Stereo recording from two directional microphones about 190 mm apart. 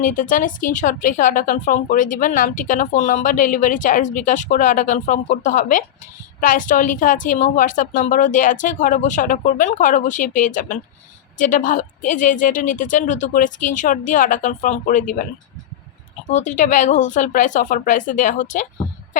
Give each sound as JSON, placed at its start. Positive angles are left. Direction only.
{"t": 0.0, "sound": "a woman's voice", "side_deg": 45}
{"t": 16.3, "sound": "speech", "side_deg": 40}